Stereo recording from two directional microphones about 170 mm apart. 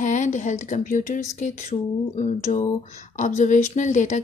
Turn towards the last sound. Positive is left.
turn(degrees=45)  # may be behind; listen again after turning